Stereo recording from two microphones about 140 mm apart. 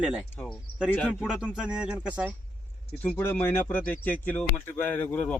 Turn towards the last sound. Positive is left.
turn(degrees=10)  # may be behind; listen again after turning